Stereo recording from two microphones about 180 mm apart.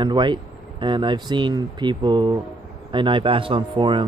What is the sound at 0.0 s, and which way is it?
Speech, 25° right (ahead or behind).